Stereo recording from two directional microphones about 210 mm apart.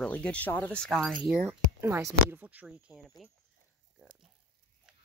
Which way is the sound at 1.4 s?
10° right (ahead or behind).